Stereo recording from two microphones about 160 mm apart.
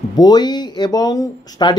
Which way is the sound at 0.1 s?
25° left (ahead or behind).